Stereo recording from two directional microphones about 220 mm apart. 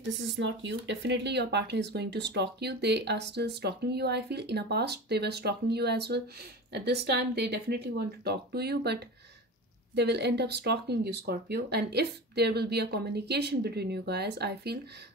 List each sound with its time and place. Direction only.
0.0 s speech: 55° right (ahead or behind)